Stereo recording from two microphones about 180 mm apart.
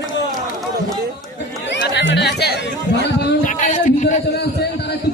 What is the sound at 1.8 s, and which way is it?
Chatter, 70° left (ahead or behind).